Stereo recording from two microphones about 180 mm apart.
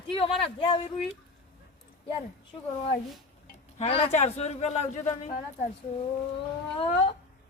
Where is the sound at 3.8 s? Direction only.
35° left (ahead or behind).